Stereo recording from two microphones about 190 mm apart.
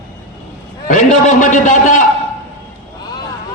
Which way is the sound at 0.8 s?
40° left (ahead or behind).